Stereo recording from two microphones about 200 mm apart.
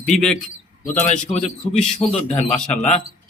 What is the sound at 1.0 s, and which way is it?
A man's voice, 35° left (ahead or behind).